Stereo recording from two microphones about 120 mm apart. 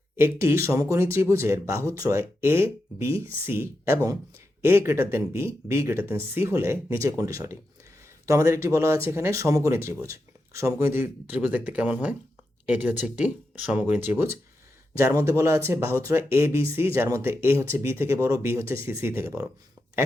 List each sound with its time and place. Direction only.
0.2 s speech: 20° right (ahead or behind)